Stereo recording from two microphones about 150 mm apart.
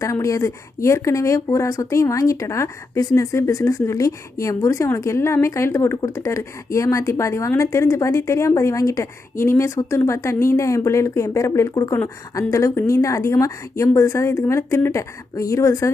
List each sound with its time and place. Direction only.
0.0 s a woman's voice: 20° left (ahead or behind)